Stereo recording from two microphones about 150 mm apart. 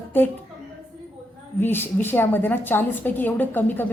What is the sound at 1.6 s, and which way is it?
A woman's voice, 15° left (ahead or behind).